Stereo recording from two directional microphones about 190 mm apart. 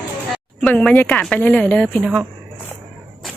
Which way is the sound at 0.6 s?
5° left (ahead or behind).